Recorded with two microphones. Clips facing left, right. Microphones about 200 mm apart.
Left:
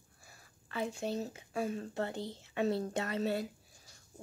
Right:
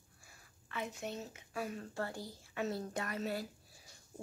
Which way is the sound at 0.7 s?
30° left (ahead or behind).